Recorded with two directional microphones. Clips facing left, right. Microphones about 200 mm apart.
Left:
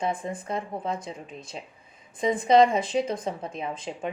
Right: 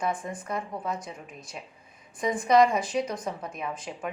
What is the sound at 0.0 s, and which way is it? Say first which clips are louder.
A woman's voice: left 1 dB; 25° left (ahead or behind).